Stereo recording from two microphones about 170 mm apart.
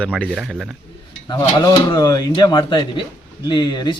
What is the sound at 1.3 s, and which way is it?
Speech, 25° left (ahead or behind).